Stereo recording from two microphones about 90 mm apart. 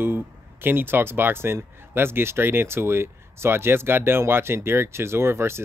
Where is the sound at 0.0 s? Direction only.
25° right (ahead or behind).